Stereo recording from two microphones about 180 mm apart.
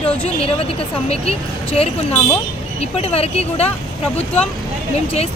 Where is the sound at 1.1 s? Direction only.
35° left (ahead or behind).